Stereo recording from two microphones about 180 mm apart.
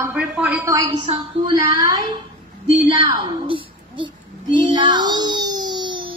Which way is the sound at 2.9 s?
25° right (ahead or behind).